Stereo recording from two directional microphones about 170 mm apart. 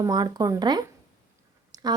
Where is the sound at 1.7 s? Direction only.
25° right (ahead or behind).